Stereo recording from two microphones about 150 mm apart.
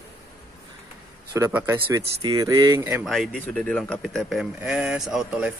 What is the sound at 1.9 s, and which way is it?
A man's voice, 25° right (ahead or behind).